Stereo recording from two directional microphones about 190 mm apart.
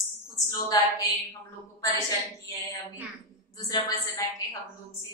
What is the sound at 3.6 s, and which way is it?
Speech, 20° left (ahead or behind).